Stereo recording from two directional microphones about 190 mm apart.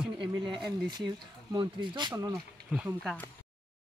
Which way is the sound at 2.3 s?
5° right (ahead or behind).